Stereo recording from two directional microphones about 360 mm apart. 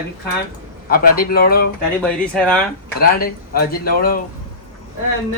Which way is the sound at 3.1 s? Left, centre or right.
Left.